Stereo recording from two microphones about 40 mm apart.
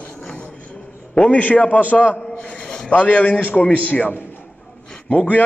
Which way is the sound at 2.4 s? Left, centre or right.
Left.